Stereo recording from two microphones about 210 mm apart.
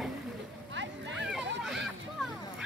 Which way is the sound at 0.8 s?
60° right (ahead or behind).